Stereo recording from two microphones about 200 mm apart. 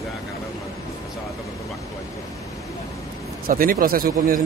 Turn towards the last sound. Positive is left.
turn(degrees=-45)  # may be behind; listen again after turning